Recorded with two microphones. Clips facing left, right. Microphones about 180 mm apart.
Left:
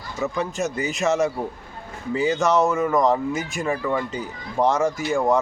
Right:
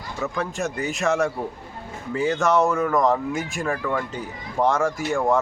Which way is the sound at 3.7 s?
10° left (ahead or behind).